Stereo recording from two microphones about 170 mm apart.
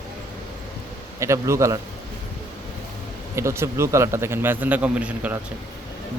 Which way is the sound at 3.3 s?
15° right (ahead or behind).